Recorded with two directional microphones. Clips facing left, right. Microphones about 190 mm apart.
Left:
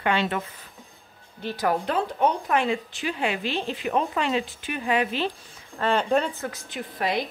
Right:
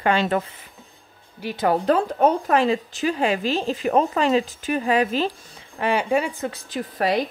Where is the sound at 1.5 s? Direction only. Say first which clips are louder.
Right 4 dB; 25° right (ahead or behind).